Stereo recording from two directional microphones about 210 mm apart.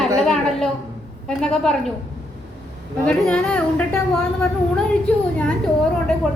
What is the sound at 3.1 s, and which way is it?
A woman's voice, 5° left (ahead or behind).